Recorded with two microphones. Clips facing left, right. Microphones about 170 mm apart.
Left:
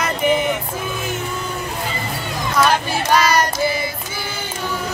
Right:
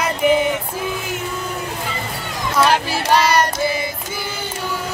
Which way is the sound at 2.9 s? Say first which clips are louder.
Even; 30° right (ahead or behind).